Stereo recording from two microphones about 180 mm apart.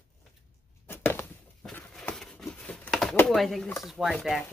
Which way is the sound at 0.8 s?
15° left (ahead or behind).